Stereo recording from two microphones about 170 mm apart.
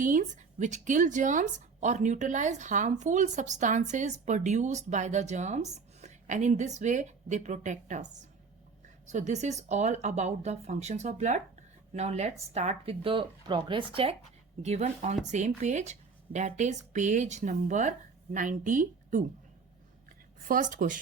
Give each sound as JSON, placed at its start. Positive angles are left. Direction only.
{"t": 0.0, "sound": "a woman's voice", "side_deg": -50}
{"t": 20.5, "sound": "a woman's voice", "side_deg": -50}